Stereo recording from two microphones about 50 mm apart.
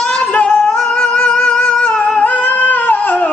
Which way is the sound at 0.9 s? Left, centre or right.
Left.